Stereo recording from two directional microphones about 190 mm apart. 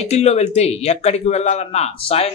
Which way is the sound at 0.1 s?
35° left (ahead or behind).